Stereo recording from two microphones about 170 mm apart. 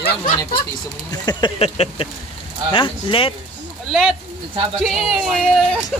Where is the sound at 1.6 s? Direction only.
35° left (ahead or behind).